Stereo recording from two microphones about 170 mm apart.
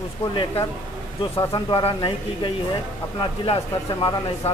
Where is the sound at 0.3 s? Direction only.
30° left (ahead or behind).